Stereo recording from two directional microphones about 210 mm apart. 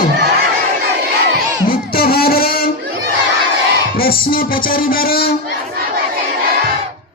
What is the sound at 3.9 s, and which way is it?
Music, 45° left (ahead or behind).